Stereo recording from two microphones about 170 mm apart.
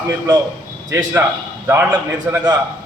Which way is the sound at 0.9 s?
20° right (ahead or behind).